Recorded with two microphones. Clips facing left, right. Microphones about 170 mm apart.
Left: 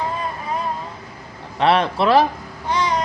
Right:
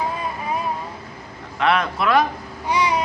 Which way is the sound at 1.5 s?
30° left (ahead or behind).